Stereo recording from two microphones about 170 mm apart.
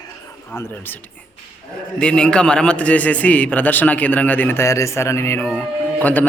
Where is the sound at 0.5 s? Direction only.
15° left (ahead or behind).